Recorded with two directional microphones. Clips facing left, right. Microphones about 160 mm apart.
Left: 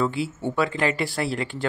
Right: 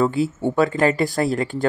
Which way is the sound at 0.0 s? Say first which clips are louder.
Right 5 dB; 45° right (ahead or behind).